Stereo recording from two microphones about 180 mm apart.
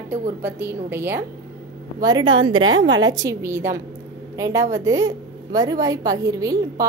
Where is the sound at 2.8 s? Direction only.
90° right.